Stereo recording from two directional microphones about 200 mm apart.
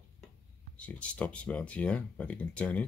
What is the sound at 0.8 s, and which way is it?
Speech, 5° left (ahead or behind).